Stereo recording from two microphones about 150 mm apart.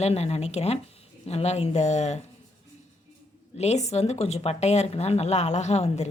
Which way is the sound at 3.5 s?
45° left (ahead or behind).